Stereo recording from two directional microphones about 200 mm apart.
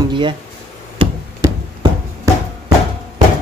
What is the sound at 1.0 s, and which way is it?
Music, 25° right (ahead or behind).